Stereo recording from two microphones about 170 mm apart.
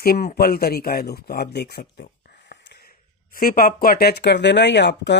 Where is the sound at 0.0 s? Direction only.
60° left (ahead or behind).